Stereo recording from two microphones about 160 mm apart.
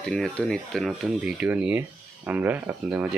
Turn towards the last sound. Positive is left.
turn(degrees=-5)  # may be behind; listen again after turning